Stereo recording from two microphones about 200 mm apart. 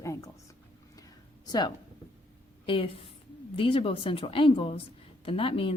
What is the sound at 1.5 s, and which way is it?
A woman's voice, 20° left (ahead or behind).